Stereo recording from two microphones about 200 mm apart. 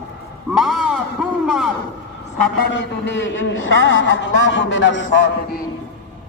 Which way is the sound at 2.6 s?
65° left (ahead or behind).